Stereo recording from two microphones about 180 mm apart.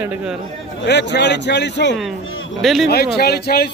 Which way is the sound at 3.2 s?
60° left (ahead or behind).